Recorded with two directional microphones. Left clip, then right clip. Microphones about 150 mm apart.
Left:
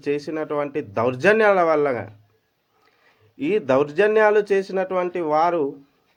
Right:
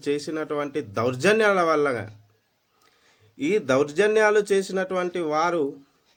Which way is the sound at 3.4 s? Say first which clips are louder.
Left 2 dB; 20° right (ahead or behind).